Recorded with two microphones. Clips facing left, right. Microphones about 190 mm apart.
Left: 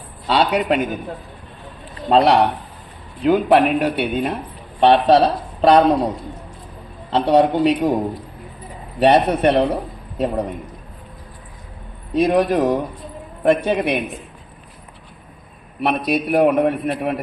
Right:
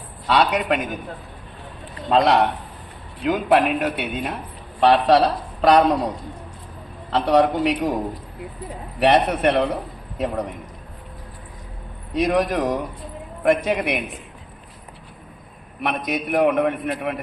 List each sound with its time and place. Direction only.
0.3 s a man's voice: 30° left (ahead or behind)
2.0 s a man's voice: 30° left (ahead or behind)
7.1 s a man's voice: 25° left (ahead or behind)
9.0 s a man's voice: 30° left (ahead or behind)
12.1 s a man's voice: 30° left (ahead or behind)
15.8 s a man's voice: 30° left (ahead or behind)